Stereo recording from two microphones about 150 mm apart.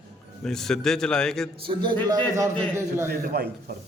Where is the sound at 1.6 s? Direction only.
35° right (ahead or behind).